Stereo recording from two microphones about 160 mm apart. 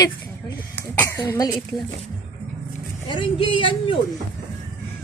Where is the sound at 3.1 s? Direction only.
30° left (ahead or behind).